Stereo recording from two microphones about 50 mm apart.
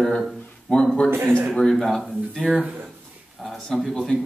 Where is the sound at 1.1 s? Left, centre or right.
Right.